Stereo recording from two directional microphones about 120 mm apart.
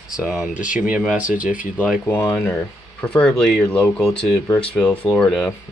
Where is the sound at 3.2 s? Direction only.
5° left (ahead or behind).